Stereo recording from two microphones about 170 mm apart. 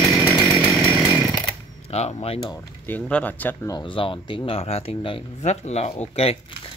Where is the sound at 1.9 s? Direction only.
40° left (ahead or behind).